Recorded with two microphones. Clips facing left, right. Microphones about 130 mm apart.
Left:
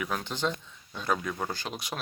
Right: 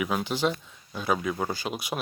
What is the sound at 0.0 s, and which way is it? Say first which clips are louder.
Speech: right 5 dB; 10° right (ahead or behind).